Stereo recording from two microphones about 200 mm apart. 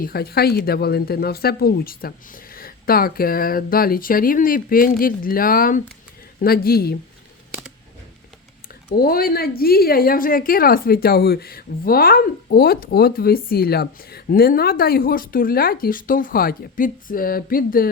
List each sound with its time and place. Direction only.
0.0 s a woman's voice: 50° left (ahead or behind)
8.9 s a woman's voice: 50° left (ahead or behind)